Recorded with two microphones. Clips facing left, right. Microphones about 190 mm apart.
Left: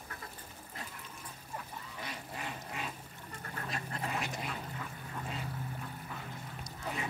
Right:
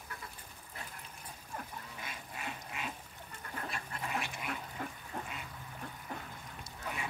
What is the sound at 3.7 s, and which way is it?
Duck, 40° left (ahead or behind).